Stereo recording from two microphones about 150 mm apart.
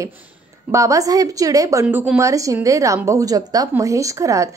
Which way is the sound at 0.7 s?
20° right (ahead or behind).